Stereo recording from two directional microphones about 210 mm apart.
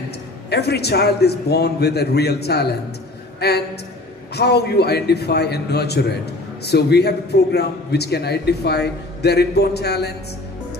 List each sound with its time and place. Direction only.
0.5 s a man's voice: 50° left (ahead or behind)